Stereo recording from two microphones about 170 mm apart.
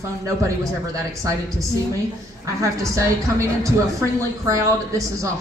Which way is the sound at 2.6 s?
20° right (ahead or behind).